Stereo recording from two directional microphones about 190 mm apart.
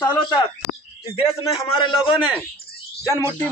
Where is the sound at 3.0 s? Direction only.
10° left (ahead or behind).